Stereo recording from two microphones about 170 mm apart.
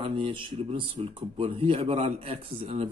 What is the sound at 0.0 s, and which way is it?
Speech, 30° right (ahead or behind).